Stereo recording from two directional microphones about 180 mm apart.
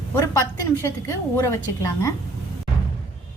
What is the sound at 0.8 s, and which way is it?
Speech, 15° left (ahead or behind).